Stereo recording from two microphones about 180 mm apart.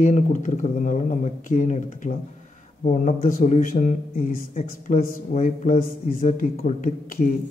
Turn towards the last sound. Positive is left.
turn(degrees=45)  # may be behind; listen again after turning